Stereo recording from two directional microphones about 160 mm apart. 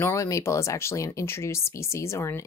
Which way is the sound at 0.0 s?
20° left (ahead or behind).